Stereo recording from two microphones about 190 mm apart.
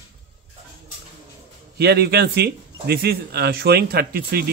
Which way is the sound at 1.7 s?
55° right (ahead or behind).